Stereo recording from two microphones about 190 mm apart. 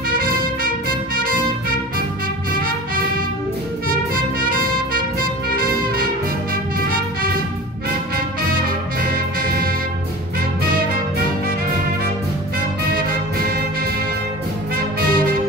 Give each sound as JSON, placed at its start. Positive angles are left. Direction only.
{"t": 0.2, "sound": "trumpet", "side_deg": -50}
{"t": 4.1, "sound": "music", "side_deg": -50}
{"t": 9.4, "sound": "music", "side_deg": -50}
{"t": 15.0, "sound": "music", "side_deg": -50}